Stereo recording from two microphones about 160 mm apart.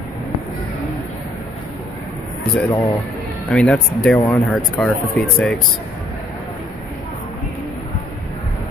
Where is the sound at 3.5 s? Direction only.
5° left (ahead or behind).